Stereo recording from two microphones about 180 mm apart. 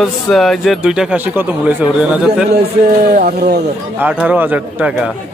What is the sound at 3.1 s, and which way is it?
Speech, 60° right (ahead or behind).